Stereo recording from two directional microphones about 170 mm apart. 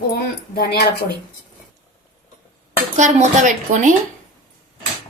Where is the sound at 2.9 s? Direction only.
45° right (ahead or behind).